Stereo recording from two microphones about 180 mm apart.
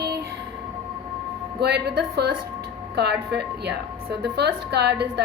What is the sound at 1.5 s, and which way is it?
A woman's voice, 65° right (ahead or behind).